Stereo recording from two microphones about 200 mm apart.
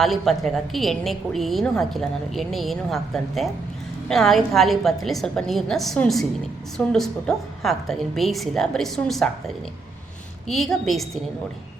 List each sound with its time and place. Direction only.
0.0 s a woman's voice: centre (ahead or behind)
10.5 s a woman's voice: centre (ahead or behind)